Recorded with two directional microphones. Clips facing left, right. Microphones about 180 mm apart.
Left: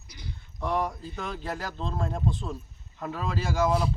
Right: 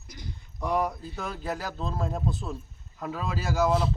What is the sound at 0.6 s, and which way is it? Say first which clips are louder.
Speech: right 1 dB; 10° right (ahead or behind).